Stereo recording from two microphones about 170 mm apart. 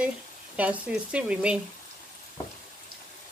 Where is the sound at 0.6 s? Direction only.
5° right (ahead or behind).